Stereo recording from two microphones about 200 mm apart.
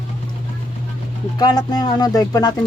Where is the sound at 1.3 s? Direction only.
20° left (ahead or behind).